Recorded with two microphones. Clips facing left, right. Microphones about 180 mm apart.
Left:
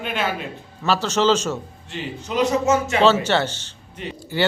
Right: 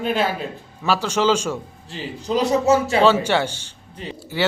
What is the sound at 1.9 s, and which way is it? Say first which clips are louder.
A man's voice: right 4 dB; 35° right (ahead or behind).